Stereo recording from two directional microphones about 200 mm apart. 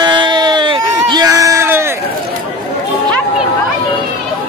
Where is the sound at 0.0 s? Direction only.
20° right (ahead or behind).